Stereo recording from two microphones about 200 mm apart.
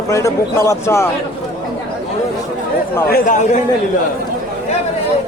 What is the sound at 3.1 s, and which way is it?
Speech, 40° left (ahead or behind).